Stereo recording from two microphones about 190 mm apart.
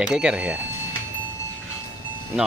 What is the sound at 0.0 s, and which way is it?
Speech, 5° right (ahead or behind).